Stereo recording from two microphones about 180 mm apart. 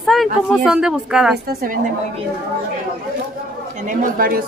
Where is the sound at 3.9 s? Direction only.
55° right (ahead or behind).